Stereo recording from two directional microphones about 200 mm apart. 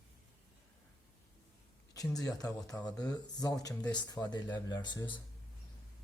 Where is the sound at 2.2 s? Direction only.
15° left (ahead or behind).